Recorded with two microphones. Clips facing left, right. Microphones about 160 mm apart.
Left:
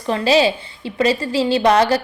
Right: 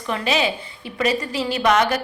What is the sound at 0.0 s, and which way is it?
A woman's voice, 30° left (ahead or behind).